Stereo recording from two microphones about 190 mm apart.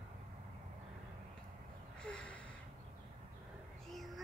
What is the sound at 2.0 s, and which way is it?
Gasp, 5° left (ahead or behind).